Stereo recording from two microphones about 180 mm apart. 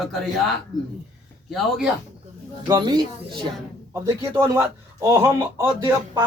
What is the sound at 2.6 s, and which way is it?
Speech, 25° right (ahead or behind).